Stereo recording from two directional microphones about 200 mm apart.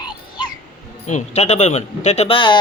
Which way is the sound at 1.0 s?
35° left (ahead or behind).